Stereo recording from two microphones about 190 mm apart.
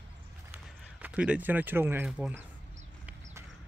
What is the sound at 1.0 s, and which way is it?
Speech, 5° right (ahead or behind).